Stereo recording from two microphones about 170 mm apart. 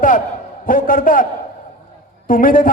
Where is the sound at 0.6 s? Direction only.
55° left (ahead or behind).